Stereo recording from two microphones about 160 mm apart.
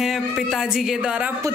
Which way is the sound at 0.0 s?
Centre (ahead or behind).